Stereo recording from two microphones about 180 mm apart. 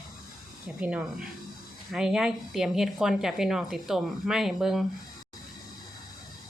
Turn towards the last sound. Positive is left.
turn(degrees=0)  # may be behind; listen again after turning